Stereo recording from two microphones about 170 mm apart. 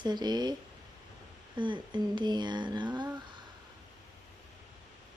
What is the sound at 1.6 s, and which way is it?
Speech, 25° right (ahead or behind).